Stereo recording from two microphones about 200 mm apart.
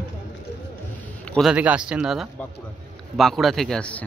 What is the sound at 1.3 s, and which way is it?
Speech, 5° right (ahead or behind).